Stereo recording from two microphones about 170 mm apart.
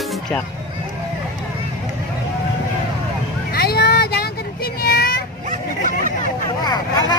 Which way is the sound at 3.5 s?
65° left (ahead or behind).